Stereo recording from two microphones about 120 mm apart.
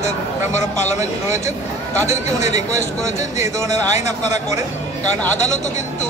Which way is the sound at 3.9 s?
75° left (ahead or behind).